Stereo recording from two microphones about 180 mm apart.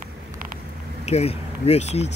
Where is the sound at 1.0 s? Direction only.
35° left (ahead or behind).